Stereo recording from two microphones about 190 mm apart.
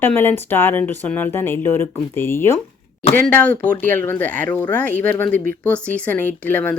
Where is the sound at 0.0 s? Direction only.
10° left (ahead or behind).